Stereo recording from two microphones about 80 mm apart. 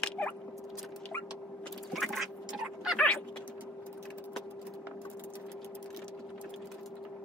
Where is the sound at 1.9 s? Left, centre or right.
Centre.